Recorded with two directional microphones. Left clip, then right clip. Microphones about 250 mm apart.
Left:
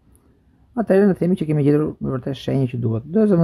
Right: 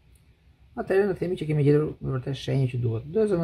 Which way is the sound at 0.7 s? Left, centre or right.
Left.